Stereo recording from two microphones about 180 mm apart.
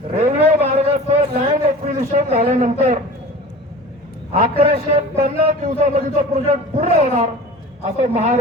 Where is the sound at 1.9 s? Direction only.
40° right (ahead or behind).